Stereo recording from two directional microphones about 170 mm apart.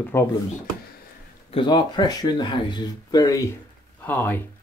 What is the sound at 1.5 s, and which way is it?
Speech, 25° left (ahead or behind).